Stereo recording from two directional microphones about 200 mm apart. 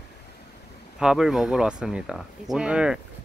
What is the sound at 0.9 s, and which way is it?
Speech, centre (ahead or behind).